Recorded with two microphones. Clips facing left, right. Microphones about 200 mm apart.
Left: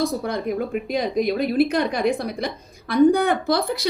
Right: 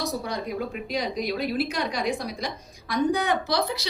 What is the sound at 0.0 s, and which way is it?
A woman's voice, 55° left (ahead or behind).